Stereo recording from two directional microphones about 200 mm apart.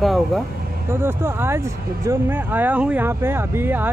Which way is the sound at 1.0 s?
10° right (ahead or behind).